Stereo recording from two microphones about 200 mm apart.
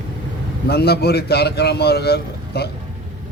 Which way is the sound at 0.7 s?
55° left (ahead or behind).